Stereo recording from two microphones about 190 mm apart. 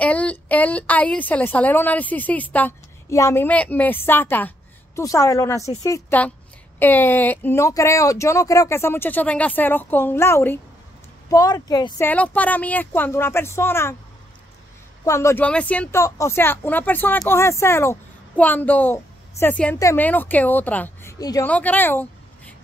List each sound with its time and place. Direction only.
0.0 s a woman's voice: 5° left (ahead or behind)
12.1 s a woman's voice: 10° left (ahead or behind)
15.0 s a woman's voice: 15° left (ahead or behind)